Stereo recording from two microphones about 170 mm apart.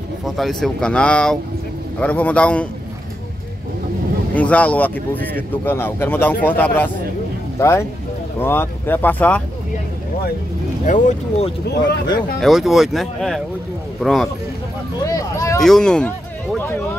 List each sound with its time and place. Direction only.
0.2 s speech: centre (ahead or behind)
4.4 s speech: 10° left (ahead or behind)
10.9 s speech: 40° left (ahead or behind)
12.4 s speech: centre (ahead or behind)
15.0 s a sound: 20° left (ahead or behind)
15.6 s speech: 5° left (ahead or behind)